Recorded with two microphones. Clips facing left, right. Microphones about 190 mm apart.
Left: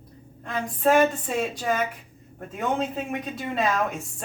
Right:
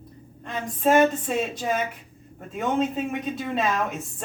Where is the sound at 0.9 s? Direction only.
Centre (ahead or behind).